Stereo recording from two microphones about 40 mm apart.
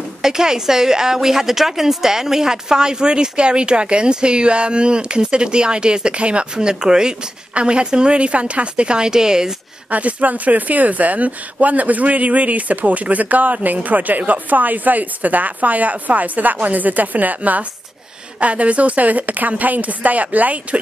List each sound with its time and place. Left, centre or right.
0.2 s a woman's voice: centre
9.8 s a woman's voice: right